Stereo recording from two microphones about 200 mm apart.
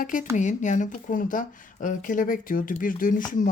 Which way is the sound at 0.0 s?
40° left (ahead or behind).